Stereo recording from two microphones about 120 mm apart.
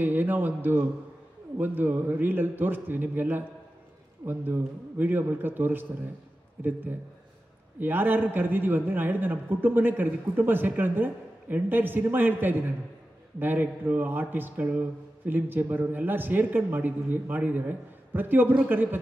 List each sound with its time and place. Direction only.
0.0 s a man's voice: 15° right (ahead or behind)